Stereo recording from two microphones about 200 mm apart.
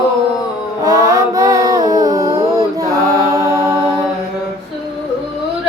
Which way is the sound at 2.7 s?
15° right (ahead or behind).